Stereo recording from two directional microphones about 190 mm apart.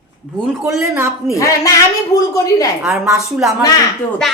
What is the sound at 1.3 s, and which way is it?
A woman's voice, 15° left (ahead or behind).